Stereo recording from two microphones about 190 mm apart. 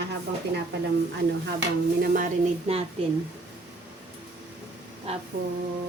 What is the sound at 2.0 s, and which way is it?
Speech, 45° right (ahead or behind).